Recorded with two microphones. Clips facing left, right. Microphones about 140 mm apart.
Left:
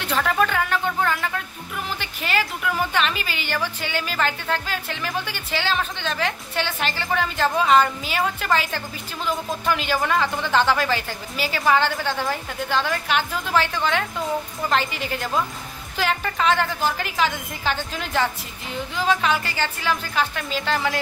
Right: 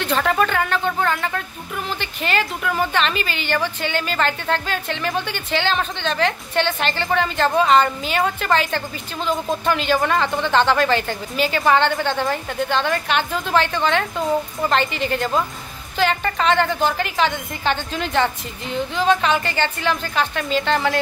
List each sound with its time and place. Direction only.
0.2 s a sound: 5° left (ahead or behind)
2.0 s a woman's voice: 5° left (ahead or behind)
9.2 s speech: 25° right (ahead or behind)
9.7 s a woman's voice: 5° left (ahead or behind)